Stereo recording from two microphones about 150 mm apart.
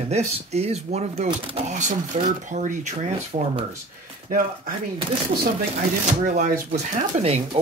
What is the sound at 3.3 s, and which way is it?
Speech, 35° right (ahead or behind).